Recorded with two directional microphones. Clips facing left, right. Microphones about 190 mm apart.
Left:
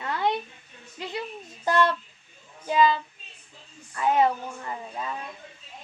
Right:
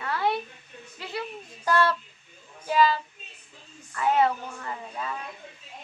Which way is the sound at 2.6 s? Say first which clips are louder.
Left 1 dB; 20° left (ahead or behind).